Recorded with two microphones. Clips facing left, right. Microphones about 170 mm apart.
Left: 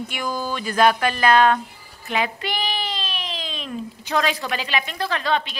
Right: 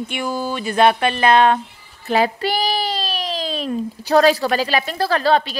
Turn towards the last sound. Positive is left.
turn(degrees=-35)  # may be behind; listen again after turning